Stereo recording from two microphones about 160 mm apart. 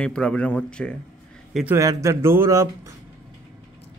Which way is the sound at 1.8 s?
20° right (ahead or behind).